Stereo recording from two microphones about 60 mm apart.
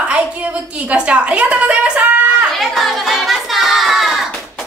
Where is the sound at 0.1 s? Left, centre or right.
Right.